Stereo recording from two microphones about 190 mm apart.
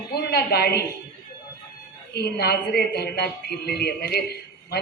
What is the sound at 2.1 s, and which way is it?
A woman's voice, 55° left (ahead or behind).